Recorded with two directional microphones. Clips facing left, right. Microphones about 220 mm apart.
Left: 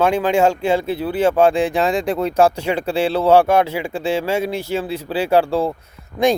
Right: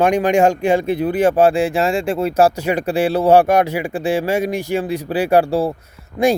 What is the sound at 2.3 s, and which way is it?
Speech, 10° right (ahead or behind).